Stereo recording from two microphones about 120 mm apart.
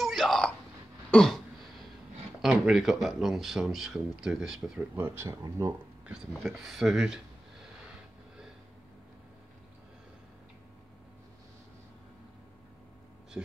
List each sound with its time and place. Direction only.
0.0 s a sound: centre (ahead or behind)
1.1 s throat clearing: 5° left (ahead or behind)
2.4 s speech: 5° right (ahead or behind)
4.9 s speech: 20° right (ahead or behind)
6.0 s speech: 5° right (ahead or behind)